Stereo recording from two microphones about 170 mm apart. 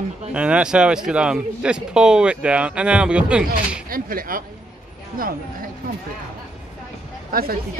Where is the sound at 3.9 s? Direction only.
55° right (ahead or behind).